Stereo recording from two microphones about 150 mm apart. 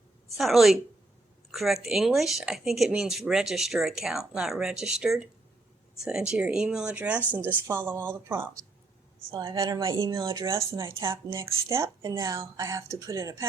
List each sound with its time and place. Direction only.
0.3 s a woman's voice: centre (ahead or behind)
9.3 s speech: 30° right (ahead or behind)